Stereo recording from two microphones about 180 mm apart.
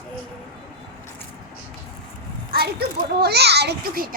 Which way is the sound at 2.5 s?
60° right (ahead or behind).